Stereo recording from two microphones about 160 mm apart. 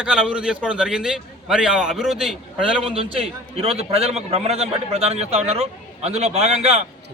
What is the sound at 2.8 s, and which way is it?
A man's voice, 35° right (ahead or behind).